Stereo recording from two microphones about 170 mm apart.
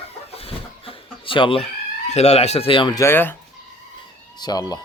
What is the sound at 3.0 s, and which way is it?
Speech, 15° left (ahead or behind).